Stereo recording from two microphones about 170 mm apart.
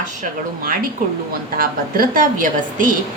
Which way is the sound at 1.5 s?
60° right (ahead or behind).